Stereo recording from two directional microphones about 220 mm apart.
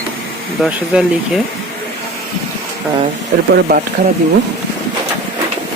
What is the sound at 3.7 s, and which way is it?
Speech, 40° right (ahead or behind).